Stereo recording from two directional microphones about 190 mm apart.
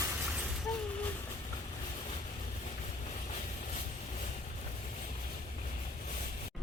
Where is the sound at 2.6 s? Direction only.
35° left (ahead or behind).